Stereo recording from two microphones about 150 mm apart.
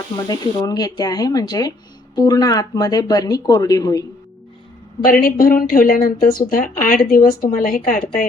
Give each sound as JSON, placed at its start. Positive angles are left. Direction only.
{"t": 0.3, "sound": "speech", "side_deg": 25}
{"t": 5.0, "sound": "speech", "side_deg": 80}